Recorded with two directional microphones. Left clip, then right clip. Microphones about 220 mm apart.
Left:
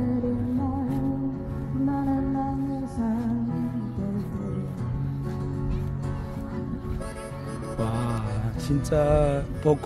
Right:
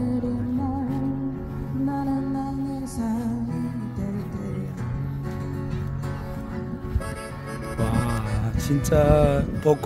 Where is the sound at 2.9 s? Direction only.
30° right (ahead or behind).